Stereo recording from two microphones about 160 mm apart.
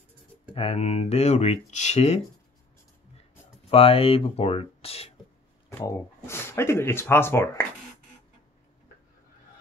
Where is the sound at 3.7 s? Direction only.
35° left (ahead or behind).